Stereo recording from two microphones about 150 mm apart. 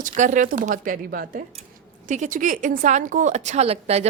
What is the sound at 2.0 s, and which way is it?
A woman's voice, 55° right (ahead or behind).